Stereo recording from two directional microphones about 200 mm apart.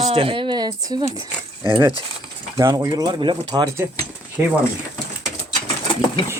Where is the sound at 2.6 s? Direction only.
20° right (ahead or behind).